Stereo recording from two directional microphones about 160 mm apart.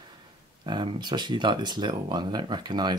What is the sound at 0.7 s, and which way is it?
Speech, 30° right (ahead or behind).